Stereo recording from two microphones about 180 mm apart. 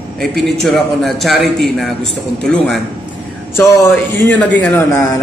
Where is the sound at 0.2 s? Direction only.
Centre (ahead or behind).